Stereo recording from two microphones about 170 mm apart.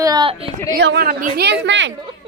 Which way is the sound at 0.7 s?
75° right (ahead or behind).